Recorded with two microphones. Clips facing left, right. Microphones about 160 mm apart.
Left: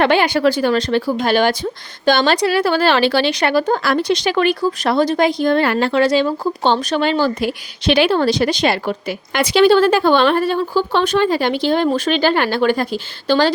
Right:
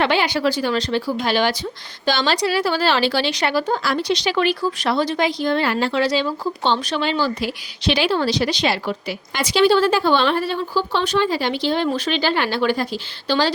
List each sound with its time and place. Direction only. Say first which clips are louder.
0.0 s a woman's voice: left 5 dB; 55° left (ahead or behind)